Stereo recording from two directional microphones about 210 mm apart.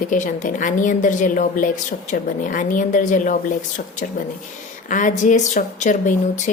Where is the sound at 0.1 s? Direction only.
35° left (ahead or behind).